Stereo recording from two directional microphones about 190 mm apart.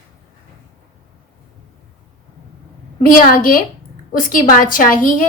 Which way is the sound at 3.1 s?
45° left (ahead or behind).